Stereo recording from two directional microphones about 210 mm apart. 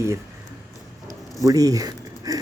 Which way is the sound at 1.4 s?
15° right (ahead or behind).